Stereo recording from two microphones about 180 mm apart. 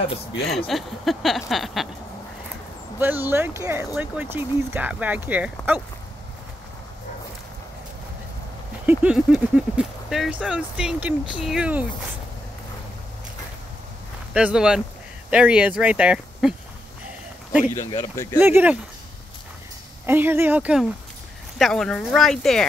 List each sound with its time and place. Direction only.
0.7 s speech: centre (ahead or behind)
3.0 s speech: 10° right (ahead or behind)
8.8 s speech: 5° right (ahead or behind)
14.3 s speech: 5° right (ahead or behind)
17.8 s speech: 20° left (ahead or behind)
18.4 s speech: 10° right (ahead or behind)
20.1 s speech: 10° right (ahead or behind)